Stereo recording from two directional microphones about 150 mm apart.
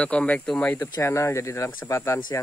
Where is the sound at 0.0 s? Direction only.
10° left (ahead or behind).